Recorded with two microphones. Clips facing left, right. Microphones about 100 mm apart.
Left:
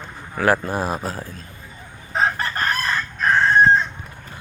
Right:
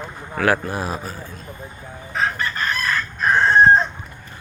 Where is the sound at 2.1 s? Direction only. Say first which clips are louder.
Left 2 dB; 35° left (ahead or behind).